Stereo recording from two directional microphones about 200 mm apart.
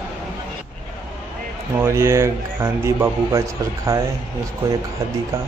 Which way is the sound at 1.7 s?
10° right (ahead or behind).